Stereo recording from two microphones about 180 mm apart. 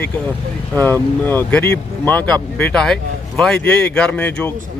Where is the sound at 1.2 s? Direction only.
10° left (ahead or behind).